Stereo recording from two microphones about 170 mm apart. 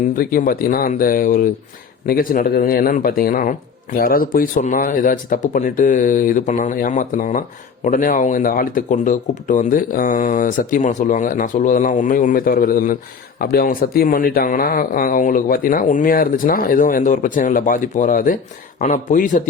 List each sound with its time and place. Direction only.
0.2 s speech: 60° left (ahead or behind)